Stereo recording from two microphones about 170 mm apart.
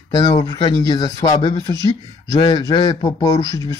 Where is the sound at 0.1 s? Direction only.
25° left (ahead or behind).